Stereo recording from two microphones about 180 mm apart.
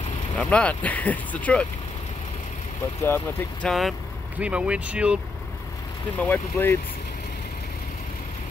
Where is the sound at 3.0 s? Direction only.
10° left (ahead or behind).